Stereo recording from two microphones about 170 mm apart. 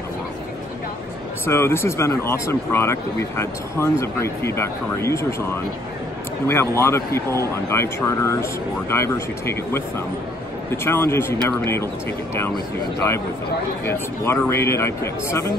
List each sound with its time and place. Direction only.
1.4 s speech: 15° left (ahead or behind)
13.8 s speech: 15° left (ahead or behind)